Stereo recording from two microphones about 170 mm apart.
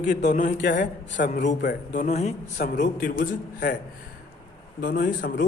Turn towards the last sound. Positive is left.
turn(degrees=55)  # may be behind; listen again after turning